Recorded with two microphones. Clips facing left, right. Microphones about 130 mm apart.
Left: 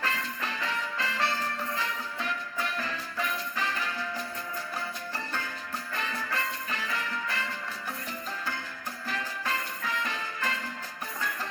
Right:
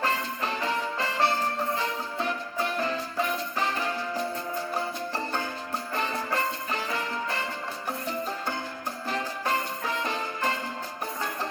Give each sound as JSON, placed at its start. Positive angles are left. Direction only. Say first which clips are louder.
{"t": 0.0, "sound": "music", "louder": "right 5 dB", "side_deg": -30}
{"t": 9.0, "sound": "music", "louder": "right 4 dB", "side_deg": -30}